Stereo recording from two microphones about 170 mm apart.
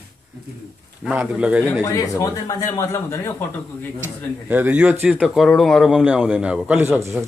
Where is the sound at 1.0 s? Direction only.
5° right (ahead or behind).